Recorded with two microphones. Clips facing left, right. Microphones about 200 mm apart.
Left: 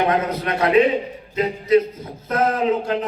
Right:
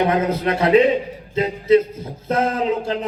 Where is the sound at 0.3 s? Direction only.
30° right (ahead or behind).